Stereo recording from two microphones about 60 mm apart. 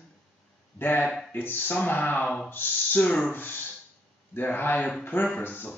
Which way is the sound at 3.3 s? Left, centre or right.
Left.